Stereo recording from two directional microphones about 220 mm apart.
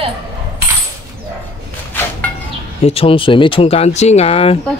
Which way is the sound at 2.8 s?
25° left (ahead or behind).